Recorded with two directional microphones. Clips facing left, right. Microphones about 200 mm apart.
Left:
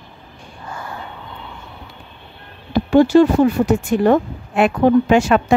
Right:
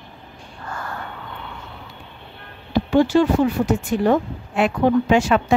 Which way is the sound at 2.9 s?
40° left (ahead or behind).